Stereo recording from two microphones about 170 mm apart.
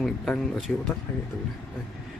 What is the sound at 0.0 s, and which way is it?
Speech, centre (ahead or behind).